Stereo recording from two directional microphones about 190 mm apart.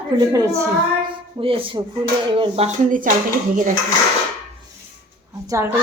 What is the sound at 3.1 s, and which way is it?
Speech, 45° right (ahead or behind).